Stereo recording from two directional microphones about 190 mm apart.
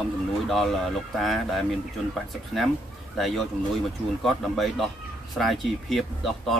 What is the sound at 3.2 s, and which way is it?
Speech, centre (ahead or behind).